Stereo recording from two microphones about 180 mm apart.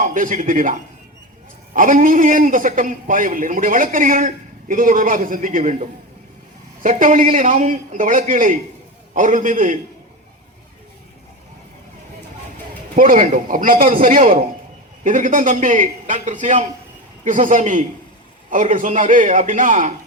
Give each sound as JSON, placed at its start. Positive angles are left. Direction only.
{"t": 0.0, "sound": "a man's voice", "side_deg": -45}
{"t": 13.0, "sound": "a man's voice", "side_deg": -50}